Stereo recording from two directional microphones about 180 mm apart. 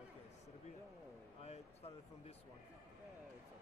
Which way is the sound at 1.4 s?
35° left (ahead or behind).